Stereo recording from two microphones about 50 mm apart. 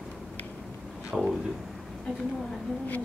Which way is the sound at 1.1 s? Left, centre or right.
Centre.